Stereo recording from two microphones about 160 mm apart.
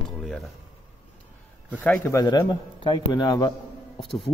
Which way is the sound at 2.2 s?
30° left (ahead or behind).